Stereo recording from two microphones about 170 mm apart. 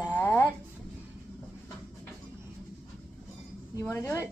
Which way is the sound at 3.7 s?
15° left (ahead or behind).